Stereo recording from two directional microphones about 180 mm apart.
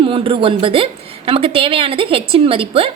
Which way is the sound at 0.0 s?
30° right (ahead or behind).